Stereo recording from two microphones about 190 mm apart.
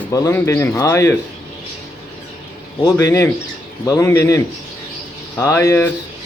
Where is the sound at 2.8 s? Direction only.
15° left (ahead or behind).